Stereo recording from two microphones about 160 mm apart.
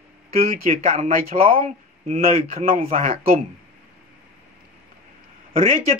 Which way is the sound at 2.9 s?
40° right (ahead or behind).